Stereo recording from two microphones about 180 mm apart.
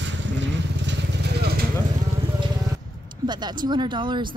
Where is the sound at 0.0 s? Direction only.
85° right.